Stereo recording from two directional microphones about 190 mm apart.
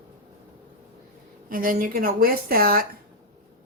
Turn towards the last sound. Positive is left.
turn(degrees=-50)  # may be behind; listen again after turning